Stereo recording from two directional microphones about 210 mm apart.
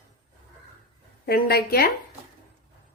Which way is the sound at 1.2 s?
45° left (ahead or behind).